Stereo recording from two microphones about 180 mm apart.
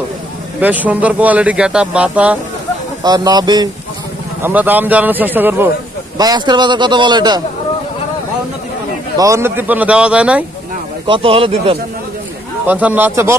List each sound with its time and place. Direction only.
0.6 s speech: 10° right (ahead or behind)
3.0 s a man's voice: 20° right (ahead or behind)
4.4 s speech: 10° right (ahead or behind)
6.1 s a man's voice: 20° right (ahead or behind)
9.2 s speech: 15° right (ahead or behind)
11.1 s a man's voice: 30° right (ahead or behind)
12.6 s speech: 10° right (ahead or behind)